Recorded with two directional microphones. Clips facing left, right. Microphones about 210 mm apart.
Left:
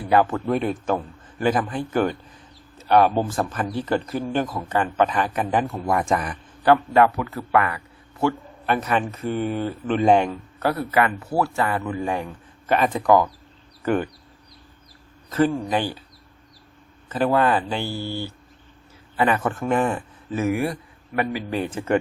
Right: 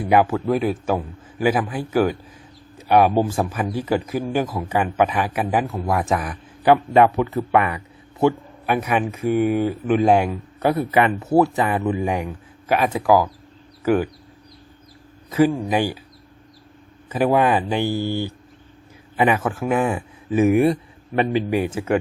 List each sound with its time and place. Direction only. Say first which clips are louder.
0.0 s speech: right 2 dB; 10° right (ahead or behind)
6.6 s a man's voice: right 2 dB; 15° right (ahead or behind)
15.3 s speech: right 3 dB; 10° right (ahead or behind)
17.1 s a man's voice: right 2 dB; 10° right (ahead or behind)
21.5 s speech: right 3 dB; 10° right (ahead or behind)